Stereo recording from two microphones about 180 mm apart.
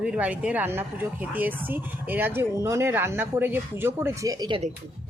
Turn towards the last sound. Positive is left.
turn(degrees=-20)  # may be behind; listen again after turning